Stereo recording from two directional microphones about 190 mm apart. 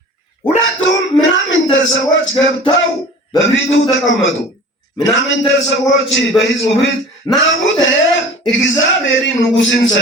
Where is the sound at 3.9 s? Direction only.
80° left.